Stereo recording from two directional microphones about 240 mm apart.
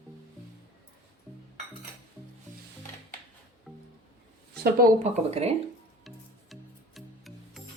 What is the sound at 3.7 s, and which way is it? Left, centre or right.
Music, centre.